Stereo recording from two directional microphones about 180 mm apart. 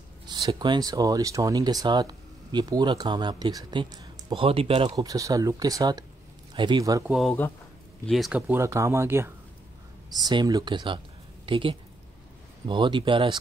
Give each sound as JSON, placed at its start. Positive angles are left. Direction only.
{"t": 0.3, "sound": "speech", "side_deg": -25}
{"t": 4.9, "sound": "speech", "side_deg": -20}
{"t": 8.1, "sound": "speech", "side_deg": -5}